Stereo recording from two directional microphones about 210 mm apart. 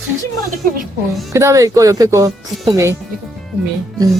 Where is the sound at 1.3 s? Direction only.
15° right (ahead or behind).